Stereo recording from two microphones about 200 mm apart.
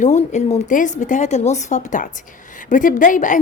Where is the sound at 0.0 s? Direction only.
35° left (ahead or behind).